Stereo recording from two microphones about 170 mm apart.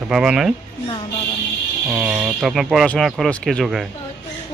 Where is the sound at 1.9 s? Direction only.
5° right (ahead or behind).